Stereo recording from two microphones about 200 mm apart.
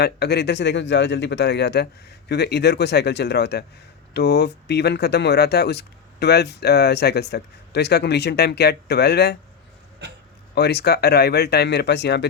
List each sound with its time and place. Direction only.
0.0 s speech: 55° left (ahead or behind)
10.5 s speech: 55° left (ahead or behind)